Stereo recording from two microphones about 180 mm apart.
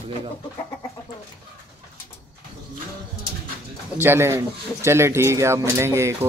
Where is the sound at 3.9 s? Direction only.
15° right (ahead or behind).